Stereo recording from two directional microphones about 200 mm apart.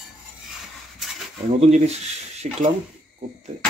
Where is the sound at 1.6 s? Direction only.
35° right (ahead or behind).